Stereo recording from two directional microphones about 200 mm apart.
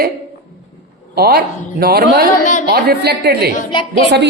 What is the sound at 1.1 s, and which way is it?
A woman's voice, 50° right (ahead or behind).